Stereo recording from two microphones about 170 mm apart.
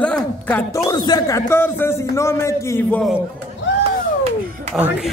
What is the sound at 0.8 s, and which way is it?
A man's voice, 25° left (ahead or behind).